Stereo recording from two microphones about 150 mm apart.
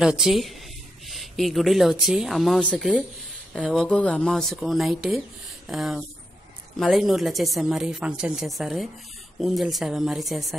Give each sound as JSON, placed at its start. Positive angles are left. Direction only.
{"t": 0.0, "sound": "a woman's voice", "side_deg": -5}